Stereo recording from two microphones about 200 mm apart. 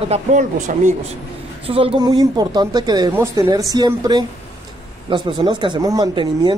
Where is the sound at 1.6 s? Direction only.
30° right (ahead or behind).